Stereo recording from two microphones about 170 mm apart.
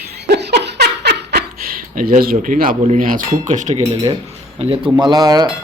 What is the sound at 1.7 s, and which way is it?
Speech, 55° right (ahead or behind).